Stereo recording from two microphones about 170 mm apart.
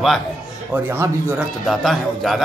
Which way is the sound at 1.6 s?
Centre (ahead or behind).